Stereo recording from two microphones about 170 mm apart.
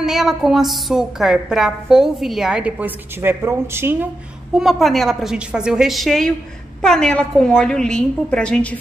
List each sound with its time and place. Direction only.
0.0 s a woman's voice: centre (ahead or behind)
4.6 s a woman's voice: centre (ahead or behind)